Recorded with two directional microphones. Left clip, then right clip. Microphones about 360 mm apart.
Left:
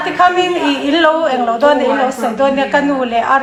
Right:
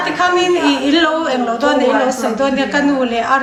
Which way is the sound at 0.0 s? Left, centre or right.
Centre.